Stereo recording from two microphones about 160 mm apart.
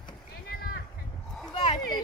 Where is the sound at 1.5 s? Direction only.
30° left (ahead or behind).